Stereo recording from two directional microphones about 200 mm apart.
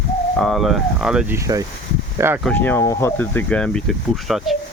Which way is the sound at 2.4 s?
10° left (ahead or behind).